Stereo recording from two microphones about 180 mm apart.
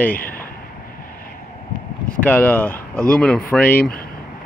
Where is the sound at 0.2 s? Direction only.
55° left (ahead or behind).